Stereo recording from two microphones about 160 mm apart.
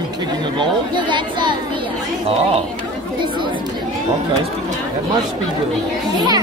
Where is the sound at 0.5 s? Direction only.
30° right (ahead or behind).